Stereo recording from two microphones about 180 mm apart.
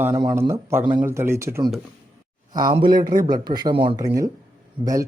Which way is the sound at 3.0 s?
45° right (ahead or behind).